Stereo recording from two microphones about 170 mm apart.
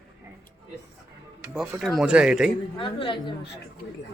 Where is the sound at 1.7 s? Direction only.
Centre (ahead or behind).